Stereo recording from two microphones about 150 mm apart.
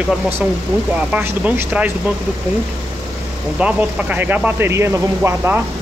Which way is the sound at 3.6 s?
10° right (ahead or behind).